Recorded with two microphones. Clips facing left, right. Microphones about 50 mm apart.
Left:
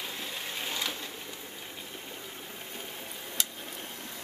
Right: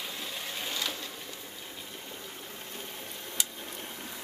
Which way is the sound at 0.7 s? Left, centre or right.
Centre.